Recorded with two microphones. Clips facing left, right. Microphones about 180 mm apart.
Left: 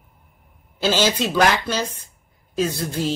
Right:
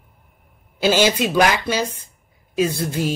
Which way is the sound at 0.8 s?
15° right (ahead or behind).